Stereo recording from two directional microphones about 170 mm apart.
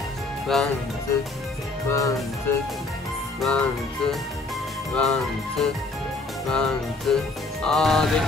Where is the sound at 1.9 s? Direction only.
20° left (ahead or behind).